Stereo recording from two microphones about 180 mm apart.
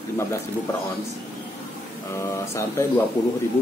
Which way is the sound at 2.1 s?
15° left (ahead or behind).